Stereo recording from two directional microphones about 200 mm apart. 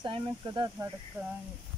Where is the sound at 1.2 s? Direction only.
10° right (ahead or behind).